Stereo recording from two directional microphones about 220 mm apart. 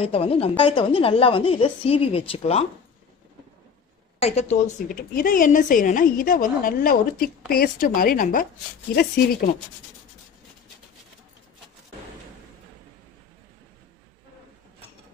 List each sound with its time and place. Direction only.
0.0 s a woman's voice: 25° left (ahead or behind)
4.2 s a woman's voice: 30° left (ahead or behind)